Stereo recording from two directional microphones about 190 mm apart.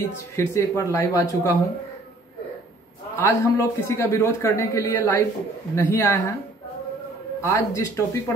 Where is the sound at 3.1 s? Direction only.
15° left (ahead or behind).